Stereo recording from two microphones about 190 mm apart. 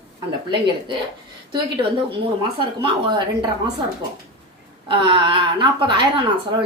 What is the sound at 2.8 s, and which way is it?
Speech, 25° right (ahead or behind).